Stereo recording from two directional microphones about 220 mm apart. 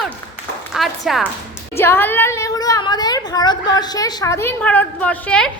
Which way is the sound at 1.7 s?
10° left (ahead or behind).